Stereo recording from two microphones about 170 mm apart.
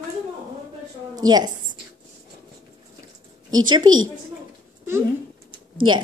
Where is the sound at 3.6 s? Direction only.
25° right (ahead or behind).